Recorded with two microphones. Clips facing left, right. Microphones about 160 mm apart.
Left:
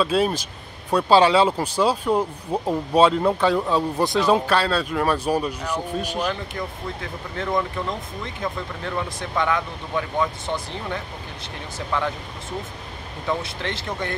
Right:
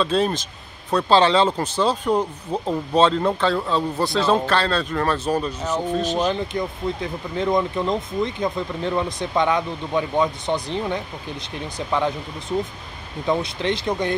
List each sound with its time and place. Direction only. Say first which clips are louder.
0.0 s speech: even; 10° left (ahead or behind)
6.1 s speech: right 4 dB; 20° right (ahead or behind)
13.3 s speech: right 5 dB; 15° right (ahead or behind)